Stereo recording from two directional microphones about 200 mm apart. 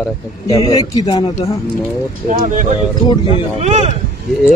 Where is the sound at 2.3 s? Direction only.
40° right (ahead or behind).